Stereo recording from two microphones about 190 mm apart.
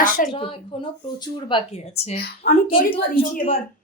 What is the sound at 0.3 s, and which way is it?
A woman's voice, 30° left (ahead or behind).